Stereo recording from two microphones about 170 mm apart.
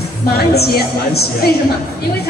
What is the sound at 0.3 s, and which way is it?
Speech, 65° left (ahead or behind).